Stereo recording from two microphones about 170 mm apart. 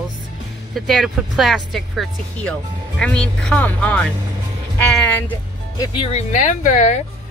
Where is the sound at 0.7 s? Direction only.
Centre (ahead or behind).